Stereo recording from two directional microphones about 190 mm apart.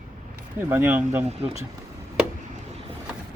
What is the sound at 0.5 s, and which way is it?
Speech, 10° right (ahead or behind).